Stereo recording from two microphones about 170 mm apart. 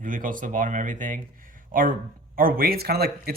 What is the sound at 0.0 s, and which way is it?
Speech, 50° right (ahead or behind).